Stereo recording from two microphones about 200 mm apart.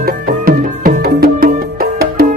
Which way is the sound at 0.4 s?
45° right (ahead or behind).